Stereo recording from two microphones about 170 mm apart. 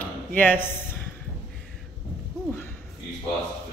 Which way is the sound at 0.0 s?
10° left (ahead or behind).